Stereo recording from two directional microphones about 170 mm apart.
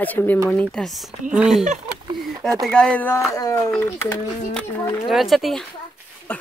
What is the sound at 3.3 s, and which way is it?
Speech, 20° left (ahead or behind).